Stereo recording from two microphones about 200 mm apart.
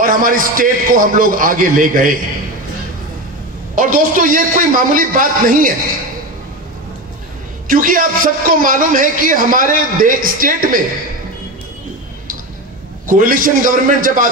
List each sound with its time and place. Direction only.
0.0 s a man's voice: 45° right (ahead or behind)
3.7 s a man's voice: 40° right (ahead or behind)
7.6 s a man's voice: 45° right (ahead or behind)
13.0 s a man's voice: 40° right (ahead or behind)